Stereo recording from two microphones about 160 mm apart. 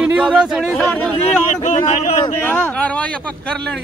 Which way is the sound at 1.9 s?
45° left (ahead or behind).